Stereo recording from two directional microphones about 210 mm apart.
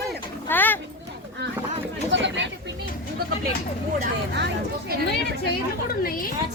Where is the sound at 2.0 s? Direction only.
60° right (ahead or behind).